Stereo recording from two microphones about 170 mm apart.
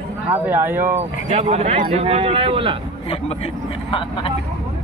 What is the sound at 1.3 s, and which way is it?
Speech, 40° right (ahead or behind).